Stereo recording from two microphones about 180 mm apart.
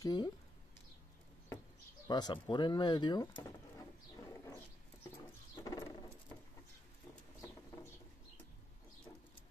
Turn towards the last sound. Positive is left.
turn(degrees=15)  # may be behind; listen again after turning